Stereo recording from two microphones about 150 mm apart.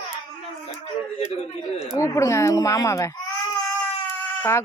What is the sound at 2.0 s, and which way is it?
Speech, 20° left (ahead or behind).